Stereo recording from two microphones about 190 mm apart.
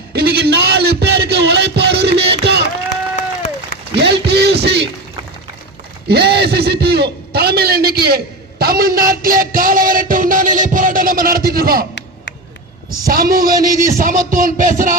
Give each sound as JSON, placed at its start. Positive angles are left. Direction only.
{"t": 0.1, "sound": "a sound", "side_deg": -55}
{"t": 3.2, "sound": "run", "side_deg": 40}
{"t": 3.9, "sound": "a sound", "side_deg": -60}
{"t": 6.1, "sound": "a man's voice", "side_deg": -60}
{"t": 9.0, "sound": "music", "side_deg": -50}
{"t": 13.1, "sound": "music", "side_deg": -50}